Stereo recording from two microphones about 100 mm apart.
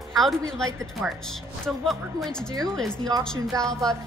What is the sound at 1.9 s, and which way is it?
Speech, centre (ahead or behind).